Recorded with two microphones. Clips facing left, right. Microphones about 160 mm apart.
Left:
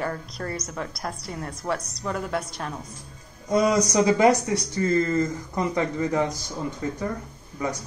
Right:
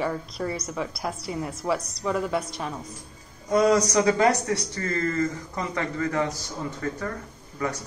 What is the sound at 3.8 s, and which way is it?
Speech, 20° left (ahead or behind).